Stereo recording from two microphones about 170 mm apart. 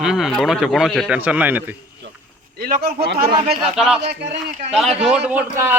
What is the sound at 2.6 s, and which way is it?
Speech, 65° right (ahead or behind).